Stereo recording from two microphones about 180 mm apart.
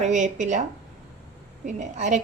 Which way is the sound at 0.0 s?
40° right (ahead or behind).